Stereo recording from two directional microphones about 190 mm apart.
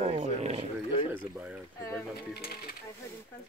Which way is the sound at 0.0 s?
30° right (ahead or behind).